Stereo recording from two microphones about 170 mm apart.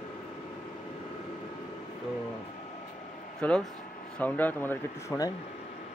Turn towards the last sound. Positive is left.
turn(degrees=20)  # may be behind; listen again after turning